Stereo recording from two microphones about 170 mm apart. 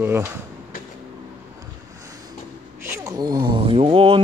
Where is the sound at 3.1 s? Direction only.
25° right (ahead or behind).